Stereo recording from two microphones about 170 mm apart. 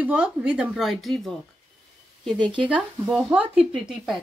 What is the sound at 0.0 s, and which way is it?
A woman's voice, 10° right (ahead or behind).